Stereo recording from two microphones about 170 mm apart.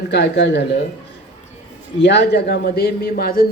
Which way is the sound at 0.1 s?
80° left.